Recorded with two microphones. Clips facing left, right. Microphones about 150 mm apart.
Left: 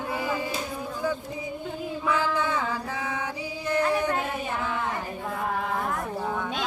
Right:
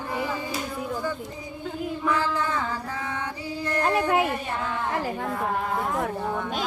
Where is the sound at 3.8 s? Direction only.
75° right (ahead or behind).